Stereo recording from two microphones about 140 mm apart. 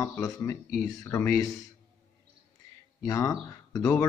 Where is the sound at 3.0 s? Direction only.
25° left (ahead or behind).